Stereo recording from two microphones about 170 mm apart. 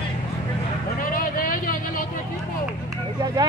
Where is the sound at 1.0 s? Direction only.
55° left (ahead or behind).